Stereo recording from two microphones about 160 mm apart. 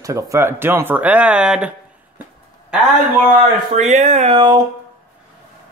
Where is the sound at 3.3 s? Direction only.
50° right (ahead or behind); by 4.6 s 30° right (ahead or behind).